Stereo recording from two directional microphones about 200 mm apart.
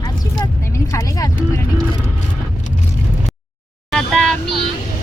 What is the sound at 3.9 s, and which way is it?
Vehicle, 5° left (ahead or behind).